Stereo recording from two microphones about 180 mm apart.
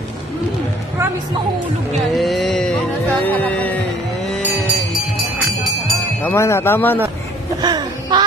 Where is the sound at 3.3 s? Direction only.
10° left (ahead or behind).